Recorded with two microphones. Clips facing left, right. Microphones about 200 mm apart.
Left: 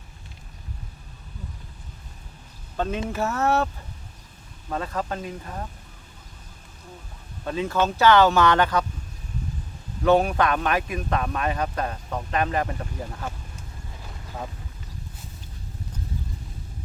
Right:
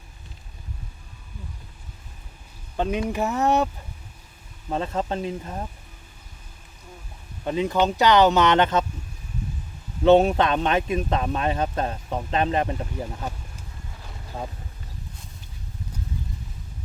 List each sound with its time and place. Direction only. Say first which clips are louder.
2.7 s speech: right 2 dB; 15° right (ahead or behind)
4.7 s speech: right 3 dB; 25° right (ahead or behind)
7.4 s speech: right 2 dB; 15° right (ahead or behind)
10.0 s speech: right 3 dB; 25° right (ahead or behind)